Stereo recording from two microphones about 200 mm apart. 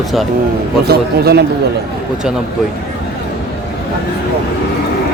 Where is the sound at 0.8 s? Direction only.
50° right (ahead or behind).